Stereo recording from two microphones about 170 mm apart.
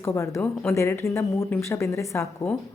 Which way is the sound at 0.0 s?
15° left (ahead or behind).